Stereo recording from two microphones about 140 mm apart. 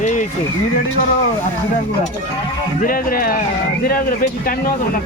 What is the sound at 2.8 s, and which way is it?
Speech, 90° left.